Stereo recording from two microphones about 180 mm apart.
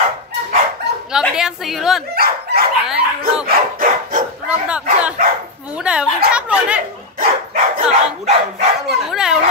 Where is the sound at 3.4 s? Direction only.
50° right (ahead or behind).